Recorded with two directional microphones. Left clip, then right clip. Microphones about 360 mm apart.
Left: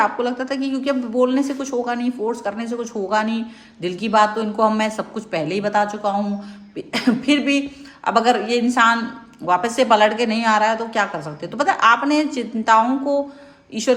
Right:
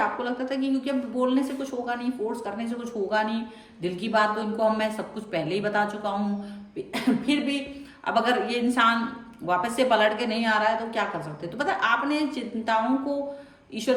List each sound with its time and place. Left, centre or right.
0.2 s a man's voice: centre